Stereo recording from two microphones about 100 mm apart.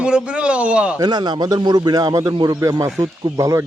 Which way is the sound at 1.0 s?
45° right (ahead or behind).